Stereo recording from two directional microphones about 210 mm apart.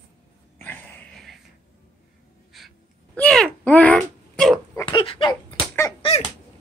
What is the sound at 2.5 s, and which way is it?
Wail, centre (ahead or behind).